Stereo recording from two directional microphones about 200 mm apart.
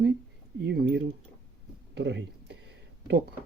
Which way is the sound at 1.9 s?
60° right (ahead or behind).